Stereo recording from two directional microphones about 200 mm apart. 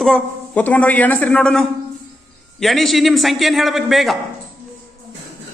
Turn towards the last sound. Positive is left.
turn(degrees=0)  # may be behind; listen again after turning